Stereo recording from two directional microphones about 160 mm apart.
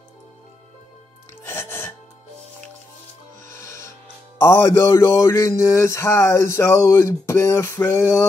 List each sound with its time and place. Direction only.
1.5 s music: 15° left (ahead or behind)
3.5 s music: 15° left (ahead or behind)
4.4 s speech: 15° left (ahead or behind)